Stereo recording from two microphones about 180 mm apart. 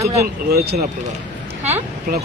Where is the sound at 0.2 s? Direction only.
60° right (ahead or behind).